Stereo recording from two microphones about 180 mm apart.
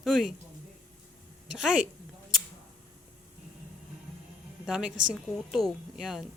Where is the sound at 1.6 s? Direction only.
5° right (ahead or behind).